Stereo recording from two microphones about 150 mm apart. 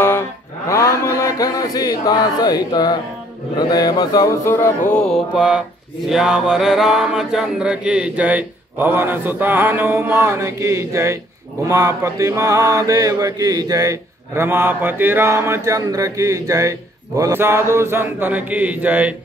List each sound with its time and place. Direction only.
0.7 s a sound: 20° left (ahead or behind)
3.5 s speech: 30° left (ahead or behind)
4.9 s mantra: 5° left (ahead or behind)